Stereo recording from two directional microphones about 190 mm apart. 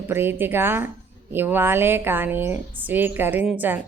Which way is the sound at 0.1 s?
10° right (ahead or behind).